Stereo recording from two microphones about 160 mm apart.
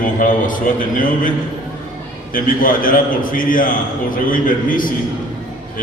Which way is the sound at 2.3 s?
60° left (ahead or behind).